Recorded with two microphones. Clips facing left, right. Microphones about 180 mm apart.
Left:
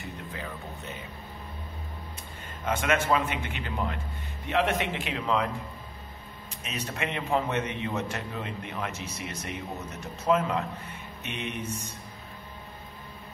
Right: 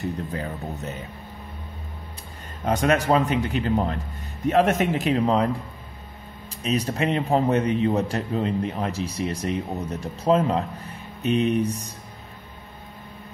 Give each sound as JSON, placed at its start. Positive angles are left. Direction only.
{"t": 0.0, "sound": "a man's voice", "side_deg": -40}
{"t": 2.6, "sound": "a man's voice", "side_deg": -35}
{"t": 6.6, "sound": "a man's voice", "side_deg": -35}